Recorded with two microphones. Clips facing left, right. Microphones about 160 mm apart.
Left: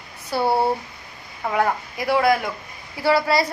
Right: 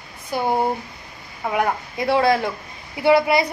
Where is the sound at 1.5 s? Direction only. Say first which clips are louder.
Even; 20° right (ahead or behind).